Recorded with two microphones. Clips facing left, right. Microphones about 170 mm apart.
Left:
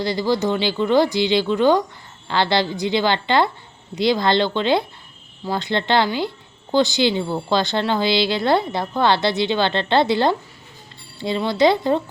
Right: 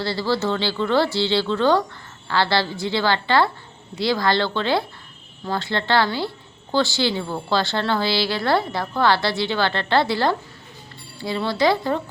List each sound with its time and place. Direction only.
0.0 s a woman's voice: 15° left (ahead or behind)